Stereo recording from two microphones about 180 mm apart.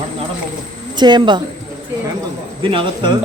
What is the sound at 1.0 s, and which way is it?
Speech, 25° right (ahead or behind).